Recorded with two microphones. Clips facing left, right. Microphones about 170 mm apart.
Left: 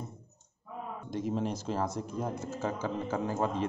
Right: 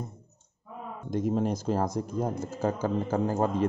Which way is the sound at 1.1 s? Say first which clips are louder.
Right 5 dB; 45° right (ahead or behind).